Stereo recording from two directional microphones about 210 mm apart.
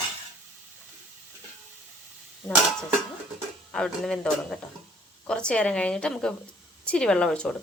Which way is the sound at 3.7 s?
5° left (ahead or behind).